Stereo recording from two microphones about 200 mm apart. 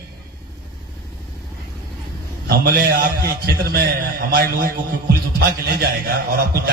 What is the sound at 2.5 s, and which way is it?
A man's voice, 50° right (ahead or behind).